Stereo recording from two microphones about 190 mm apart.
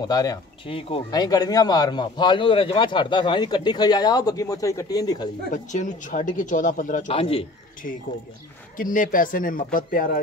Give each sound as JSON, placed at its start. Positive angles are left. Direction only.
{"t": 0.0, "sound": "speech", "side_deg": 20}
{"t": 5.5, "sound": "speech", "side_deg": 40}
{"t": 7.1, "sound": "speech", "side_deg": 30}
{"t": 8.7, "sound": "speech", "side_deg": 45}